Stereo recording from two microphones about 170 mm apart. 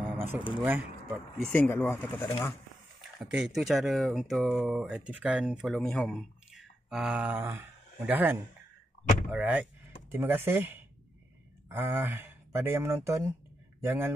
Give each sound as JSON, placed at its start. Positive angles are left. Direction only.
{"t": 0.0, "sound": "a sound", "side_deg": -10}
{"t": 0.6, "sound": "speech", "side_deg": -5}
{"t": 1.4, "sound": "speech", "side_deg": 10}
{"t": 3.0, "sound": "speech", "side_deg": -5}